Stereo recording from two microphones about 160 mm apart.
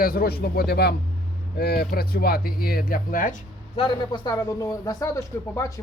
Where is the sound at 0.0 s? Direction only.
70° left (ahead or behind).